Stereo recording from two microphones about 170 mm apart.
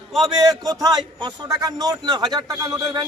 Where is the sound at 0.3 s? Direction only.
20° right (ahead or behind).